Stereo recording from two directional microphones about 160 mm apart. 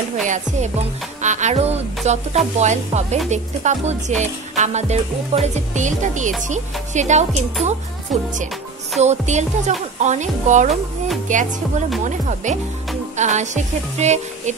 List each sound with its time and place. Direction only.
0.2 s music: 50° right (ahead or behind)
9.0 s music: 45° right (ahead or behind)